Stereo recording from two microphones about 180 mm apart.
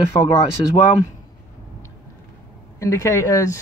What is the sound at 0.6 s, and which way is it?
Speech, 25° left (ahead or behind).